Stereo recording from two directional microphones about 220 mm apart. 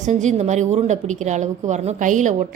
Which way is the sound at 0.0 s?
35° right (ahead or behind).